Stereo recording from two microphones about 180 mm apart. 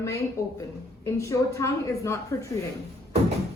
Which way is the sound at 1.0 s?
15° left (ahead or behind).